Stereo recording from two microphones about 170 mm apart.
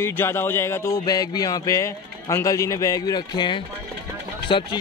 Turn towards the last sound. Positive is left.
turn(degrees=30)  # may be behind; listen again after turning